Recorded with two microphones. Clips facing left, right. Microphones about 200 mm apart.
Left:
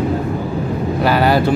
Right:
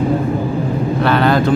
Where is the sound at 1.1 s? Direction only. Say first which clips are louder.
Even; 10° left (ahead or behind).